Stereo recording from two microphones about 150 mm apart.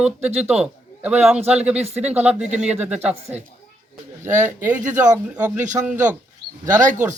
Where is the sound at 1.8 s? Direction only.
45° right (ahead or behind).